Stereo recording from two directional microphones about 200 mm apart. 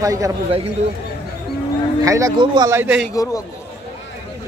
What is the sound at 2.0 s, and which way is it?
Speech, 15° right (ahead or behind).